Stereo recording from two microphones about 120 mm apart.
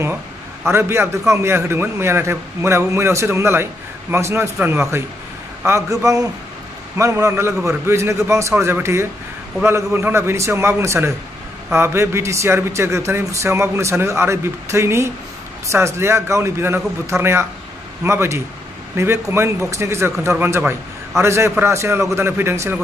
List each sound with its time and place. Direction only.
0.7 s a man's voice: 20° right (ahead or behind)